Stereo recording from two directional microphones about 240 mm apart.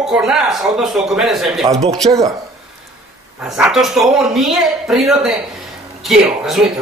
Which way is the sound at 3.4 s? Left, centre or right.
Centre.